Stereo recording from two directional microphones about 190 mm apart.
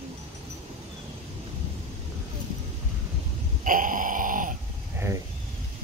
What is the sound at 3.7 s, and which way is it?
Grunt, 45° right (ahead or behind).